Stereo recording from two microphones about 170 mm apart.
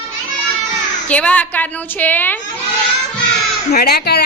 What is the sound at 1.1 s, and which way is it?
A woman's voice, 10° left (ahead or behind).